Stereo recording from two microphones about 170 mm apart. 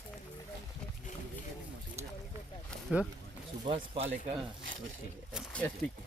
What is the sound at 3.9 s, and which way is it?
Speech, 35° right (ahead or behind).